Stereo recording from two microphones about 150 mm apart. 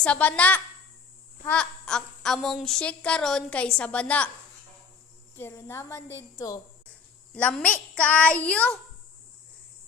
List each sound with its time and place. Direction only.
0.0 s a child's voice: 10° left (ahead or behind)
5.4 s a woman's voice: 15° left (ahead or behind)
7.3 s a child's voice: 10° left (ahead or behind)